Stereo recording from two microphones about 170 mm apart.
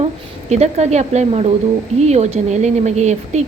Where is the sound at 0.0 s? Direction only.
40° right (ahead or behind).